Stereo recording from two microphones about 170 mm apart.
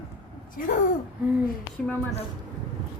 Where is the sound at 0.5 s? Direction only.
50° left (ahead or behind).